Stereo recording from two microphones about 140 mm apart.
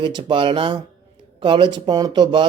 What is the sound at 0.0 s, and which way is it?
Speech, 35° right (ahead or behind).